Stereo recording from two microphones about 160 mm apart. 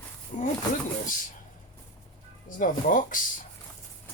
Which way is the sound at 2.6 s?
55° left (ahead or behind).